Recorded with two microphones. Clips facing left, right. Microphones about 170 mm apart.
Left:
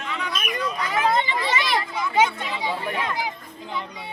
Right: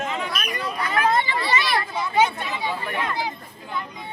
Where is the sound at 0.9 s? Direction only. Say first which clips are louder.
Right 1 dB; 15° left (ahead or behind).